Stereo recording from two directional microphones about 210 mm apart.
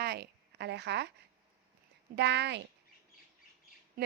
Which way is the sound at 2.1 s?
55° right (ahead or behind).